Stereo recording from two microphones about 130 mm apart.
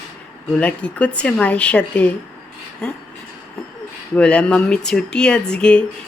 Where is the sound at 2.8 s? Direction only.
5° left (ahead or behind).